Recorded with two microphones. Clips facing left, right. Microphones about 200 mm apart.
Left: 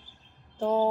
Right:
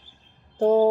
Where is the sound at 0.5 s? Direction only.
40° right (ahead or behind).